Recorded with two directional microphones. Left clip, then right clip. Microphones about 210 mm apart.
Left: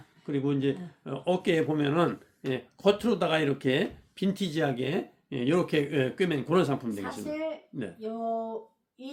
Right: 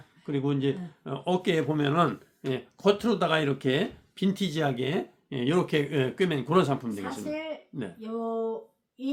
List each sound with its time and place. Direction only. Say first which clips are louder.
0.3 s speech: even; 10° right (ahead or behind)